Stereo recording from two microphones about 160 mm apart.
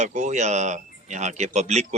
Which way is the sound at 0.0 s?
50° right (ahead or behind).